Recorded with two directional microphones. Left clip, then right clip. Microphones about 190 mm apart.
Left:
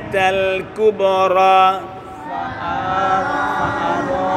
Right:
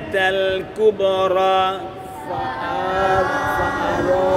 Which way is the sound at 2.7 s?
55° right (ahead or behind).